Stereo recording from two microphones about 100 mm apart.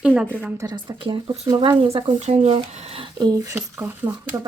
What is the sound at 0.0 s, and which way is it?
Speech, 10° right (ahead or behind).